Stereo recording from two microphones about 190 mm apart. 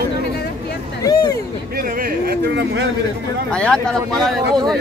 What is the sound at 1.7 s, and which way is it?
Speech, 50° right (ahead or behind).